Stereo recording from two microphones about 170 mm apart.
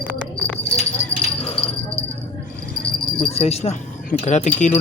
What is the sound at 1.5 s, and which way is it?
Jingle bell, 35° left (ahead or behind).